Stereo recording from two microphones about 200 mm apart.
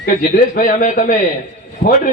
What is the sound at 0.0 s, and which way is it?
A man's voice, 45° left (ahead or behind).